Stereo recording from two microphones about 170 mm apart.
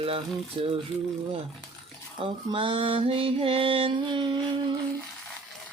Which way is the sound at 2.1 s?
30° right (ahead or behind).